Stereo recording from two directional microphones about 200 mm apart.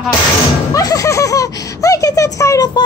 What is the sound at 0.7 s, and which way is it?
Speech, 15° left (ahead or behind).